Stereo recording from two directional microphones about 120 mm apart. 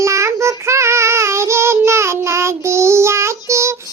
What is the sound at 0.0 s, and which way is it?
Child singing, 25° right (ahead or behind).